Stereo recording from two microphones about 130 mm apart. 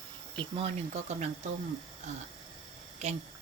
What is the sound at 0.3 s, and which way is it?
Speech, 45° right (ahead or behind).